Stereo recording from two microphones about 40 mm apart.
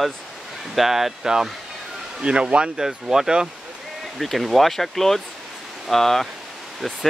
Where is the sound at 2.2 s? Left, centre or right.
Right.